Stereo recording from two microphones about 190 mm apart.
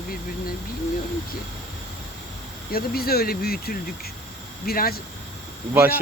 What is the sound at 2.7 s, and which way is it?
Speech, 55° left (ahead or behind).